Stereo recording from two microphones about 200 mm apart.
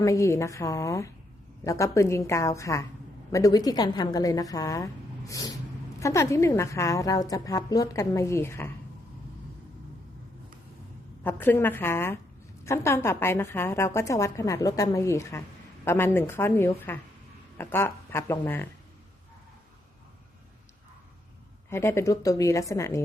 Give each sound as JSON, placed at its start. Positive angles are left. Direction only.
{"t": 0.0, "sound": "a woman's voice", "side_deg": 15}
{"t": 11.2, "sound": "a woman's voice", "side_deg": 10}
{"t": 21.7, "sound": "a woman's voice", "side_deg": 15}